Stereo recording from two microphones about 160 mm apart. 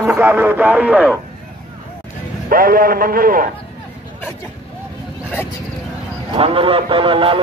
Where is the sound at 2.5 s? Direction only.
65° right (ahead or behind).